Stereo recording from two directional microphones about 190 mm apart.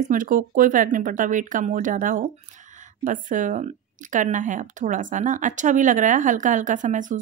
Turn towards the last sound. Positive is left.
turn(degrees=-40)  # may be behind; listen again after turning